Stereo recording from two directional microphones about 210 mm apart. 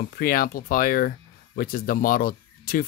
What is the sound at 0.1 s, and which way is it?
Speech, 45° left (ahead or behind).